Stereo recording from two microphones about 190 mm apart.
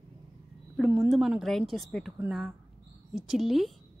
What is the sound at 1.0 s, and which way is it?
A woman's voice, centre (ahead or behind).